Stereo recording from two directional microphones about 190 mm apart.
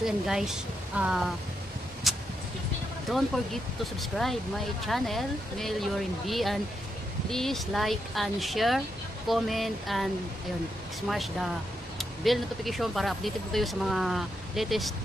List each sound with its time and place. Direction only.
0.0 s speech: centre (ahead or behind)
2.1 s vehicle: centre (ahead or behind)
3.1 s speech: centre (ahead or behind)
11.1 s speech: centre (ahead or behind)